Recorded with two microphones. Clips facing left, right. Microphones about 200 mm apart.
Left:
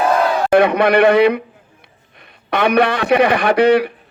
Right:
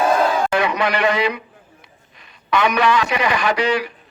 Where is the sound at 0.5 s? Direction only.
55° left (ahead or behind).